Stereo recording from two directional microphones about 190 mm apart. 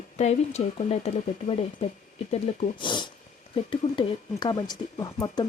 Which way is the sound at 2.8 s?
25° left (ahead or behind).